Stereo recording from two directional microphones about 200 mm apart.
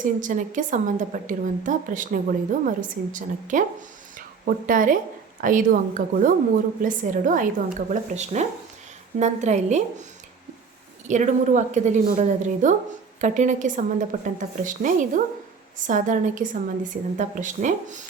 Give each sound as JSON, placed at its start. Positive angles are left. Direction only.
{"t": 0.0, "sound": "a woman's voice", "side_deg": -40}
{"t": 11.1, "sound": "a woman's voice", "side_deg": -35}